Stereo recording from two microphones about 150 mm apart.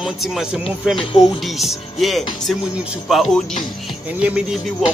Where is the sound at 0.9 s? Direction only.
30° left (ahead or behind).